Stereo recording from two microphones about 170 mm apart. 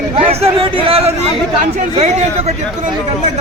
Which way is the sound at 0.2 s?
35° right (ahead or behind).